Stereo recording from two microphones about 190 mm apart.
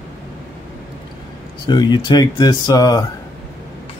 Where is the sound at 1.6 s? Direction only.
25° left (ahead or behind).